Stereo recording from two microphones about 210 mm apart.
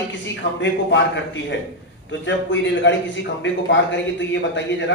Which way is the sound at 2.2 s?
60° left (ahead or behind).